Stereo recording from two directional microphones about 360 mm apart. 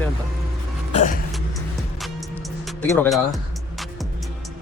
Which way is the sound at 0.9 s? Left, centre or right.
Left.